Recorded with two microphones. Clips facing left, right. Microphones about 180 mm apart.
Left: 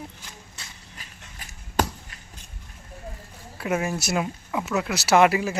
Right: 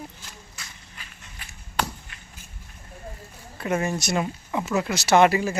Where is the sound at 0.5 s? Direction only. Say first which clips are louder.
Even; 40° left (ahead or behind).